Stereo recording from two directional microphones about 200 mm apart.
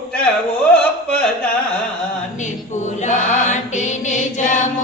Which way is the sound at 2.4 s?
35° left (ahead or behind).